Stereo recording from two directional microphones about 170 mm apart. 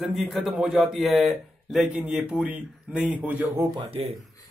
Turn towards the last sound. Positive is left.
turn(degrees=-35)  # may be behind; listen again after turning